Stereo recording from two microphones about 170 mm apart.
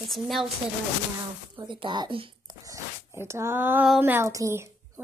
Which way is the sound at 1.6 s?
30° right (ahead or behind).